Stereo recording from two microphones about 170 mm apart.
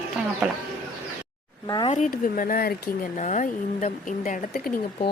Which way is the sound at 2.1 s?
55° left (ahead or behind).